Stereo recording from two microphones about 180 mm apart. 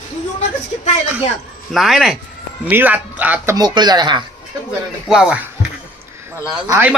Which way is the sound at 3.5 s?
25° right (ahead or behind).